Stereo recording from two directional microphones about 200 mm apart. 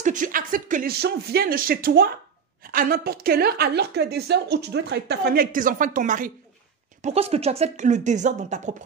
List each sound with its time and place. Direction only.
0.0 s a woman's voice: 40° right (ahead or behind)
7.0 s speech: 30° right (ahead or behind)